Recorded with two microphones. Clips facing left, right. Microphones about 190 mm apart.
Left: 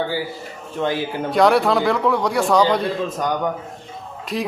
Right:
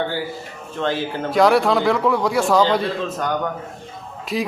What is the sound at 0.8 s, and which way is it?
Speech, 15° left (ahead or behind).